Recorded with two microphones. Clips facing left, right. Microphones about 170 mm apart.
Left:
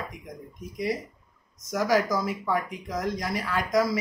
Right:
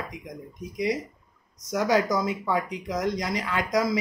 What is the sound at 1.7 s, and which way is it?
Speech, 20° right (ahead or behind).